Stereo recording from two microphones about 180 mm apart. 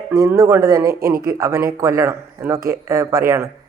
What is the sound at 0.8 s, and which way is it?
Speech, 55° right (ahead or behind).